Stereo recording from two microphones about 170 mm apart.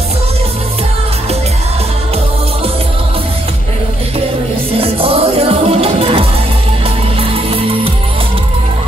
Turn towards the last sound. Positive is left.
turn(degrees=-35)  # may be behind; listen again after turning